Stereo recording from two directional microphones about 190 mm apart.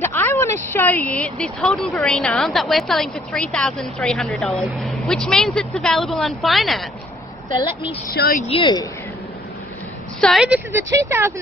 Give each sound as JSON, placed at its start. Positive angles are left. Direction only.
{"t": 0.0, "sound": "speech", "side_deg": 10}
{"t": 8.1, "sound": "speech", "side_deg": 50}
{"t": 8.5, "sound": "speech", "side_deg": 25}
{"t": 10.2, "sound": "speech", "side_deg": 0}
{"t": 10.7, "sound": "speech", "side_deg": -15}